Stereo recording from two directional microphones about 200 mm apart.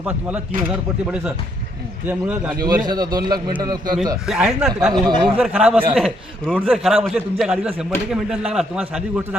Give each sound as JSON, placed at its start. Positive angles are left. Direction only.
{"t": 0.0, "sound": "speech", "side_deg": -5}
{"t": 2.8, "sound": "a man's voice", "side_deg": -20}
{"t": 4.3, "sound": "a man's voice", "side_deg": -5}